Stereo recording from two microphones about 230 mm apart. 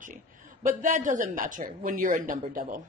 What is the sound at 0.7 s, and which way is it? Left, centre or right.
A woman's voice, right.